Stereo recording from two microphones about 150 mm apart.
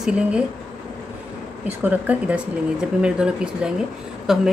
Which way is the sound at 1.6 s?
10° right (ahead or behind).